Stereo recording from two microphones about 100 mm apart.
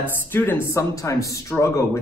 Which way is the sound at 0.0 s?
20° left (ahead or behind).